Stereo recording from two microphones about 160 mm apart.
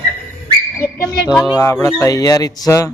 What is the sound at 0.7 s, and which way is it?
Speech, 15° left (ahead or behind).